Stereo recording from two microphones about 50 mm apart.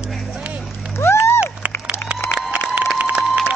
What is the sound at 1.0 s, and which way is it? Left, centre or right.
Music, left.